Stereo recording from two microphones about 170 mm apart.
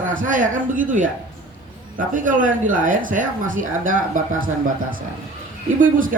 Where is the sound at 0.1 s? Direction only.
50° right (ahead or behind).